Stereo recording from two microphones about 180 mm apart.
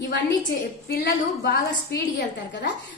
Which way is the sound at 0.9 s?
60° left (ahead or behind).